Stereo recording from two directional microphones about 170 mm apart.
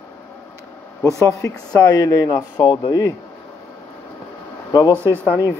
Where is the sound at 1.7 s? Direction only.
20° left (ahead or behind).